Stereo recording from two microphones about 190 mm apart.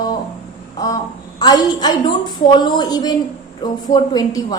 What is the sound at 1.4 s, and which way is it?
A woman's voice, 20° left (ahead or behind).